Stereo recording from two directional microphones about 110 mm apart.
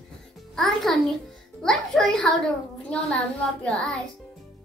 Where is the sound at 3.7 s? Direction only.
5° left (ahead or behind).